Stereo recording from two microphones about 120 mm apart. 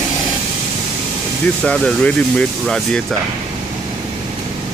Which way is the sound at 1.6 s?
10° left (ahead or behind).